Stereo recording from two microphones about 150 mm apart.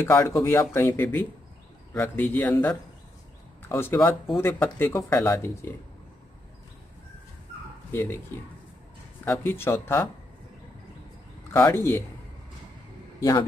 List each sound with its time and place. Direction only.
0.0 s speech: 15° left (ahead or behind)
7.9 s speech: 15° left (ahead or behind)
9.2 s speech: 15° left (ahead or behind)
11.5 s speech: 15° left (ahead or behind)